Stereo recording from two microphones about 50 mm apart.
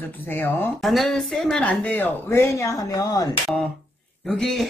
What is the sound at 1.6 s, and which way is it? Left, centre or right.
Speech, left.